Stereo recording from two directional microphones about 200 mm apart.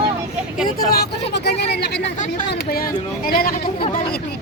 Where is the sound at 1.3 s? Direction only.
55° left (ahead or behind).